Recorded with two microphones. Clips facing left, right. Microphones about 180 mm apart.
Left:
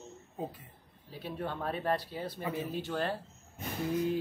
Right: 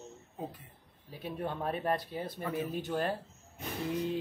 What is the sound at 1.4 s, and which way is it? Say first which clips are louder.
Speech: right 1 dB; 15° right (ahead or behind).